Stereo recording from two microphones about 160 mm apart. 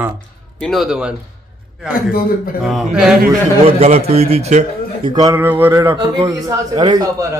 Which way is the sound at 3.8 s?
40° right (ahead or behind).